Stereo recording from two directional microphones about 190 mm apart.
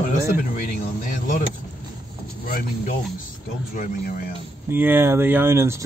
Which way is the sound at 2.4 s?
50° left (ahead or behind).